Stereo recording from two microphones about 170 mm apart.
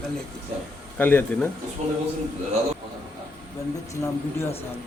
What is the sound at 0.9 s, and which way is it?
Speech, 10° left (ahead or behind).